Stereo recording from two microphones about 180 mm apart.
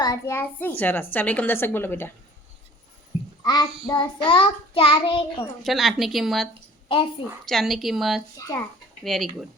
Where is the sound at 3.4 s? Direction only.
20° left (ahead or behind).